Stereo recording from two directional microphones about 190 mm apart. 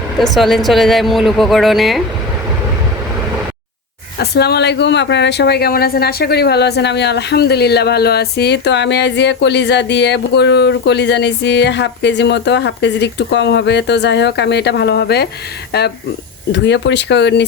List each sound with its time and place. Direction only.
0.2 s a woman's voice: centre (ahead or behind)
4.2 s a woman's voice: 60° left (ahead or behind)